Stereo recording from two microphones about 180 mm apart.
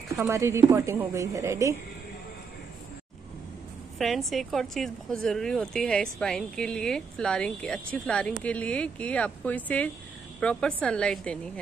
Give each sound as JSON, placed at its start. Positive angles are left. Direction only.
{"t": 0.1, "sound": "a woman's voice", "side_deg": -15}
{"t": 4.0, "sound": "speech", "side_deg": 0}